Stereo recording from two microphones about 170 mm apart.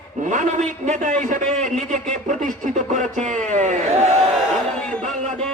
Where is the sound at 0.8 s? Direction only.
45° right (ahead or behind).